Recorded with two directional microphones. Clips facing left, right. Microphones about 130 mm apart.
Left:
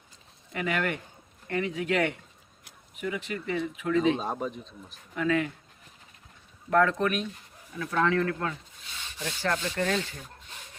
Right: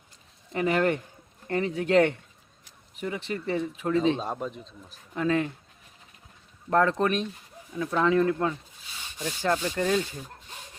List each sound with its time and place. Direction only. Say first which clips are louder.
0.5 s a man's voice: right 5 dB; 30° right (ahead or behind)
4.2 s speech: even; centre (ahead or behind)
5.1 s a man's voice: right 1 dB; 30° right (ahead or behind)
6.7 s speech: right 1 dB; 30° right (ahead or behind)
7.8 s speech: right 3 dB; 15° right (ahead or behind)
9.1 s rub: right 3 dB; 15° right (ahead or behind)